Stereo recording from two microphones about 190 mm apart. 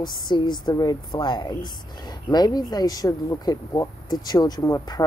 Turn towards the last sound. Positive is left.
turn(degrees=15)  # may be behind; listen again after turning